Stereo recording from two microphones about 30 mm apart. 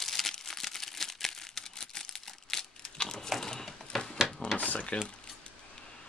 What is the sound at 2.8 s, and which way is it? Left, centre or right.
Crumpling, left.